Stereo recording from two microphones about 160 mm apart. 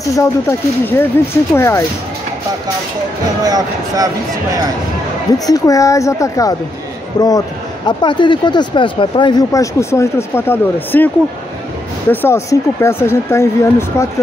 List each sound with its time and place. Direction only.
0.1 s speech: 15° left (ahead or behind)
3.4 s speech: 25° right (ahead or behind)
5.5 s speech: 20° left (ahead or behind)
12.1 s speech: 15° left (ahead or behind)